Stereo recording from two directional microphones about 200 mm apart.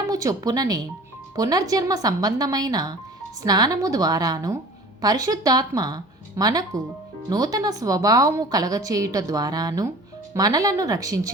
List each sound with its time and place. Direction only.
0.1 s a woman's voice: 15° right (ahead or behind)